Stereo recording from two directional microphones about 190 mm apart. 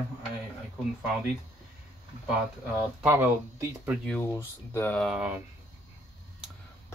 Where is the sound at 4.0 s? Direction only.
10° left (ahead or behind).